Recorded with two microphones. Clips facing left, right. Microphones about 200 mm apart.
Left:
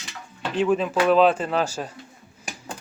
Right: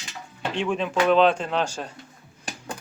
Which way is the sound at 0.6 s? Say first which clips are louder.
Left 3 dB; 5° left (ahead or behind).